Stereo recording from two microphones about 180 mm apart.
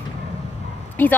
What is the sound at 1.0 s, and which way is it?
Speech, 10° left (ahead or behind).